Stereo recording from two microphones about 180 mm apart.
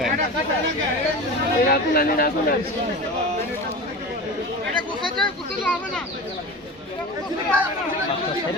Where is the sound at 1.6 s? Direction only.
55° left (ahead or behind).